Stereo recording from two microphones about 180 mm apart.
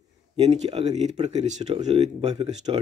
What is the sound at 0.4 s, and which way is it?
Speech, 35° right (ahead or behind).